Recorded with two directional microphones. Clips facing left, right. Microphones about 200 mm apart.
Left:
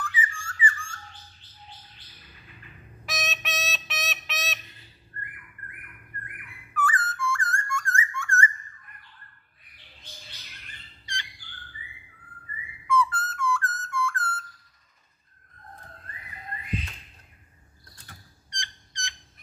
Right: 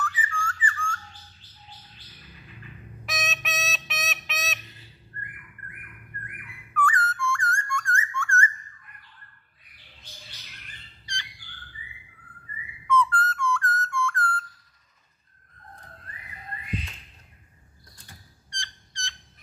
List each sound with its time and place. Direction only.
0.0 s squawk: 10° left (ahead or behind)
3.1 s music: centre (ahead or behind)
6.7 s music: 5° left (ahead or behind)
8.1 s a sound: 15° left (ahead or behind)
12.8 s whistle: 10° left (ahead or behind)
18.5 s owl: 15° left (ahead or behind)